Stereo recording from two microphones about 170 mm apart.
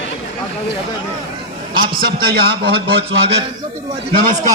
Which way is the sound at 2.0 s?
65° right (ahead or behind).